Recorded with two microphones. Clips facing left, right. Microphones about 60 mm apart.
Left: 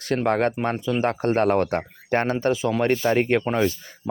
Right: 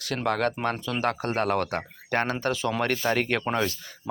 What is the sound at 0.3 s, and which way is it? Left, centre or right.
Speech, left.